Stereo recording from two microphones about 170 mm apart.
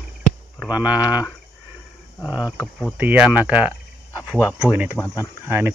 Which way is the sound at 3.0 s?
10° right (ahead or behind).